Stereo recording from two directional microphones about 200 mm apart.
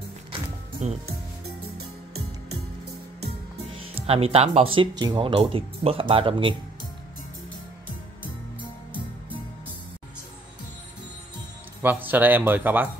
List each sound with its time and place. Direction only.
0.8 s speech: 35° right (ahead or behind)
3.9 s speech: 30° right (ahead or behind)
11.8 s speech: 10° right (ahead or behind)